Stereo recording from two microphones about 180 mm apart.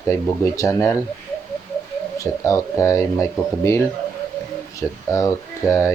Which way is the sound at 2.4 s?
15° left (ahead or behind).